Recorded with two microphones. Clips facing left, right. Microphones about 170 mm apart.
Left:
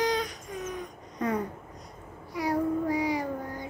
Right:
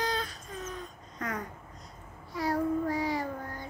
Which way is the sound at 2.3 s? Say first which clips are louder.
Left 2 dB; 20° left (ahead or behind).